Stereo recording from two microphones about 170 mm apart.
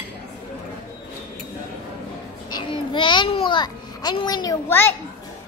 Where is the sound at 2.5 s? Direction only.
25° left (ahead or behind).